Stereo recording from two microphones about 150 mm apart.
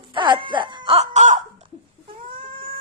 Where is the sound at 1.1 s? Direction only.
50° right (ahead or behind).